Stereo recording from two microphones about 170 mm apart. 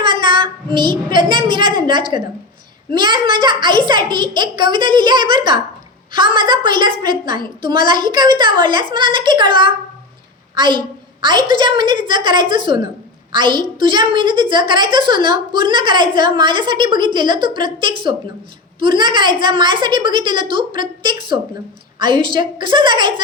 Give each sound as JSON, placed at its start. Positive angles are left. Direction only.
{"t": 1.1, "sound": "a woman's voice", "side_deg": -30}